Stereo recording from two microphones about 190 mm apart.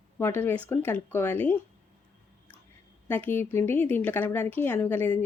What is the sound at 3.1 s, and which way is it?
Speech, 10° left (ahead or behind).